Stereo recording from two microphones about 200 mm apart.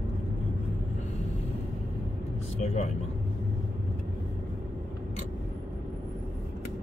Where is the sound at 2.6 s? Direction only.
35° left (ahead or behind).